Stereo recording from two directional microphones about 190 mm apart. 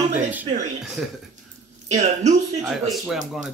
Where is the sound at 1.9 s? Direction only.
40° right (ahead or behind).